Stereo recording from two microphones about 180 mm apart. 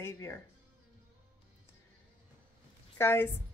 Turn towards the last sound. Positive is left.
turn(degrees=15)  # may be behind; listen again after turning